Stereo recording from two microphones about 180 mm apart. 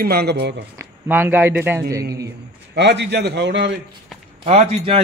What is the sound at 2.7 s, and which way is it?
Speech, 70° right (ahead or behind).